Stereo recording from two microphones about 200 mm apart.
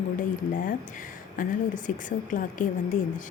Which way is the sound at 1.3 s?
40° left (ahead or behind).